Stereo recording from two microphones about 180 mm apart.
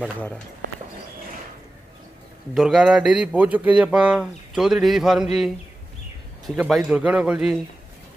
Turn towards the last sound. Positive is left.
turn(degrees=-5)  # may be behind; listen again after turning